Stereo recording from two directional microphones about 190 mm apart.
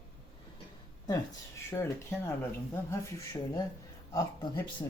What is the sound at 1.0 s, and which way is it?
Speech, 15° left (ahead or behind).